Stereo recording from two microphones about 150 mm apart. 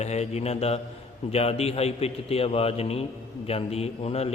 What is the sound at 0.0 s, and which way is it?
A man's voice, 45° left (ahead or behind).